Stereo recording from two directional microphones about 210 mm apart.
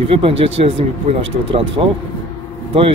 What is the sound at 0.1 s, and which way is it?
A man's voice, 25° right (ahead or behind).